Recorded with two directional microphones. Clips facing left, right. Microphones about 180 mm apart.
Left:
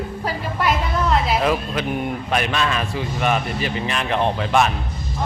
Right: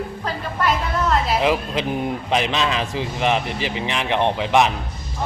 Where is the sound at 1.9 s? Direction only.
25° right (ahead or behind).